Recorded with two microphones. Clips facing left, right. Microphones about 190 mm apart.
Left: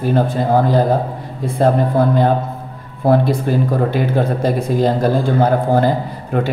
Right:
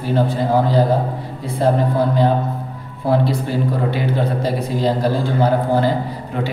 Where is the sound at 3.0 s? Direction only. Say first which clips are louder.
Left 4 dB; 50° left (ahead or behind).